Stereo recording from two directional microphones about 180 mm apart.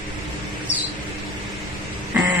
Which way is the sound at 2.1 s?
10° right (ahead or behind).